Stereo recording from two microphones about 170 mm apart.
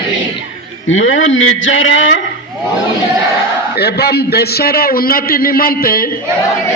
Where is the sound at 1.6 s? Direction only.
90° left.